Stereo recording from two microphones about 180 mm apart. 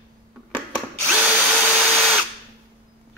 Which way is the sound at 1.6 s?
Centre (ahead or behind).